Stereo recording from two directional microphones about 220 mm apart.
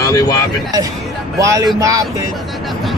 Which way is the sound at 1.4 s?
15° right (ahead or behind).